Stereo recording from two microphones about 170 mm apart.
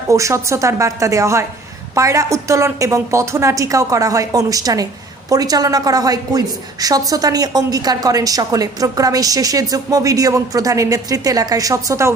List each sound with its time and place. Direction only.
0.1 s a woman's voice: 20° right (ahead or behind)